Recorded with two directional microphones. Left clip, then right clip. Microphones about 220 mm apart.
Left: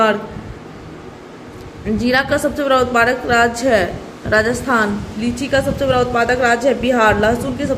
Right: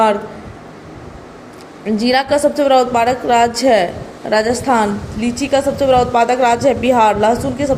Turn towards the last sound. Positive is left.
turn(degrees=-15)  # may be behind; listen again after turning